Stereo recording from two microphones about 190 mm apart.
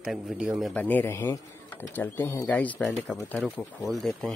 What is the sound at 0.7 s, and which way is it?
Speech, 10° left (ahead or behind).